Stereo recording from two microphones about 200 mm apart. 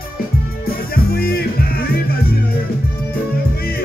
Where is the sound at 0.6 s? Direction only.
50° left (ahead or behind).